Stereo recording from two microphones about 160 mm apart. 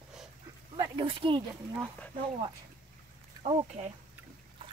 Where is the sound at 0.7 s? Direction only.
30° right (ahead or behind).